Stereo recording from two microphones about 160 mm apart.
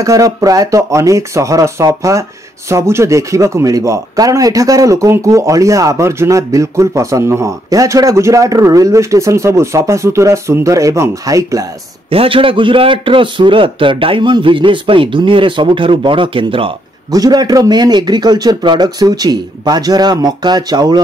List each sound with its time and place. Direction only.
0.0 s a man's voice: 20° right (ahead or behind)
12.1 s a man's voice: 35° right (ahead or behind)